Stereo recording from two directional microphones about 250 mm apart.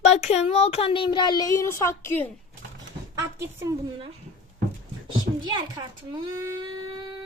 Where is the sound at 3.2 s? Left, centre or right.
Centre.